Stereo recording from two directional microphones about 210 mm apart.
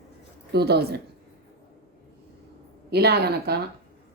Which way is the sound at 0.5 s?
50° right (ahead or behind).